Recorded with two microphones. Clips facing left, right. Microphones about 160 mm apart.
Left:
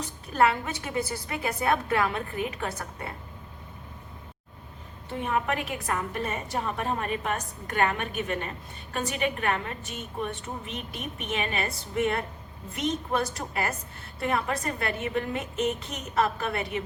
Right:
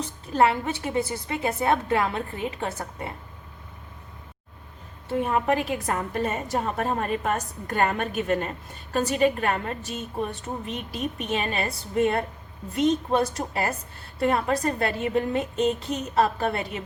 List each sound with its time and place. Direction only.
0.0 s a woman's voice: 25° right (ahead or behind)
5.2 s a woman's voice: 35° right (ahead or behind)